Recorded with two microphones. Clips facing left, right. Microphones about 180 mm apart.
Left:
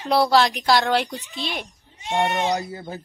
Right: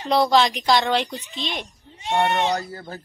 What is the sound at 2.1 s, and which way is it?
Speech, 15° left (ahead or behind).